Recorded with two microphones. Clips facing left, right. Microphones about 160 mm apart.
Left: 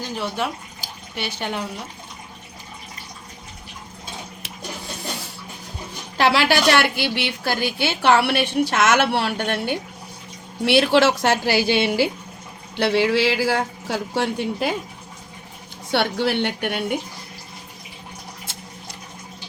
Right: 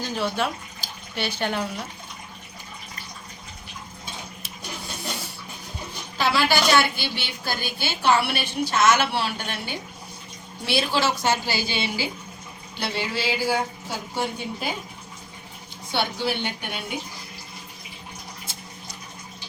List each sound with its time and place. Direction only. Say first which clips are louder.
0.0 s speech: even; 15° left (ahead or behind)
6.1 s a woman's voice: left 4 dB; 85° left; by 12.1 s 65° left (ahead or behind)
12.7 s a man's voice: left 10 dB; 85° left
15.9 s a woman's voice: left 5 dB; 75° left (ahead or behind)